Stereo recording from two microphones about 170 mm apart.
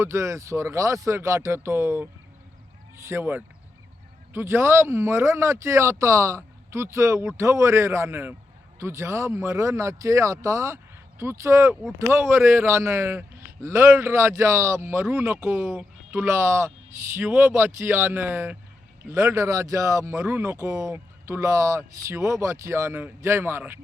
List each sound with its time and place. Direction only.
0.0 s a man's voice: 15° right (ahead or behind)